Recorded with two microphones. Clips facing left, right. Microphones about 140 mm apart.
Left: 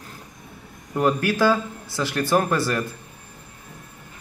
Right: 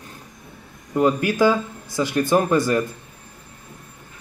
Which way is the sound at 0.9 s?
15° right (ahead or behind).